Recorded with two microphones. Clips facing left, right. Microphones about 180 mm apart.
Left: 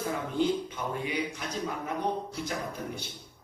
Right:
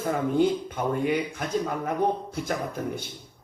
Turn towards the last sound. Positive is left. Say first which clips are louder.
# right 5 dB
turn(degrees=-50)  # may be behind; listen again after turning